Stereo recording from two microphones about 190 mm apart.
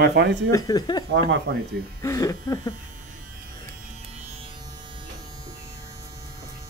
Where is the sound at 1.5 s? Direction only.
60° right (ahead or behind).